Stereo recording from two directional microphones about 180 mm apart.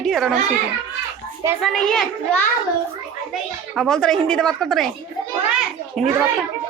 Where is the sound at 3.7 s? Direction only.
Centre (ahead or behind).